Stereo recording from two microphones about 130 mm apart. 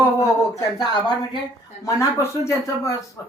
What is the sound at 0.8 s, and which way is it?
Speech, 30° left (ahead or behind).